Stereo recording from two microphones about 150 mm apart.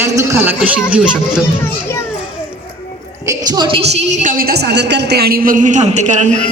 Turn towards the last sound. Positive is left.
turn(degrees=-55)  # may be behind; listen again after turning